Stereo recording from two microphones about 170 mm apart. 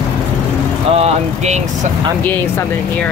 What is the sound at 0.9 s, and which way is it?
Speech, 40° right (ahead or behind).